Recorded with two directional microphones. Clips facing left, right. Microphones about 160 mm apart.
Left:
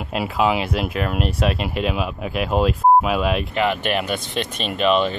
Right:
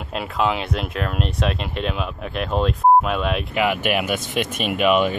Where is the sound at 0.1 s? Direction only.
5° left (ahead or behind).